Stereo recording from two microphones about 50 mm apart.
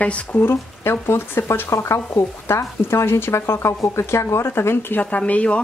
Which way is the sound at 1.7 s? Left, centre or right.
Left.